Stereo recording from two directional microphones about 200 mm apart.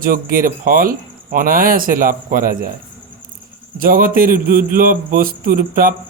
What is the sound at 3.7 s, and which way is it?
A man's voice, 45° right (ahead or behind).